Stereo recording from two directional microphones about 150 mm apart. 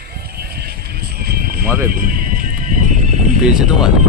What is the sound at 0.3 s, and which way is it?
Music, 90° right.